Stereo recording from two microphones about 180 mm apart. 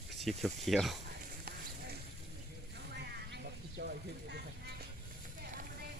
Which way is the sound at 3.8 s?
70° right (ahead or behind).